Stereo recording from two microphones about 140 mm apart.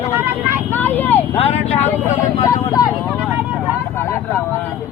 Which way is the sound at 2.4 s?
25° left (ahead or behind).